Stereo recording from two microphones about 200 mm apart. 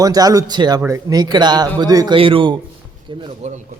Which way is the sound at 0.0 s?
20° right (ahead or behind).